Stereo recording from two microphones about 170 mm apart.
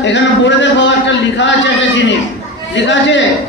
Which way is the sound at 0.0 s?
90° left.